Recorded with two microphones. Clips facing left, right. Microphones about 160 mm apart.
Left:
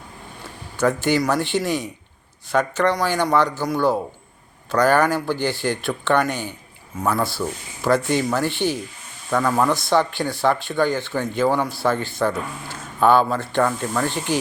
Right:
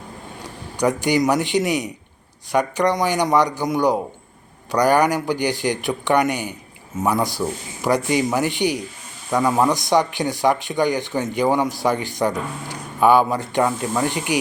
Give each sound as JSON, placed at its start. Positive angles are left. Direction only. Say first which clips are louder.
{"t": 0.8, "sound": "speech", "louder": "right 1 dB", "side_deg": -15}